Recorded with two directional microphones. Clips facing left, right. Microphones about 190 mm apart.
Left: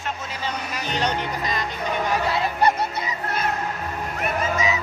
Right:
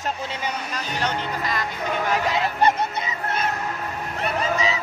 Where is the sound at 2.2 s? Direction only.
20° right (ahead or behind).